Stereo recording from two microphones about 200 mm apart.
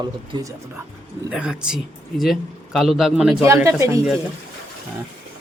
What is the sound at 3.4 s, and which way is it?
Speech, 15° right (ahead or behind).